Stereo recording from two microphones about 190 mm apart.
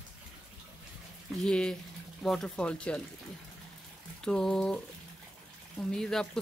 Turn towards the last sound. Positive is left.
turn(degrees=5)  # may be behind; listen again after turning